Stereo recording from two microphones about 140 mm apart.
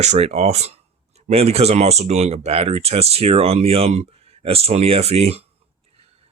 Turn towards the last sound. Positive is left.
turn(degrees=-45)  # may be behind; listen again after turning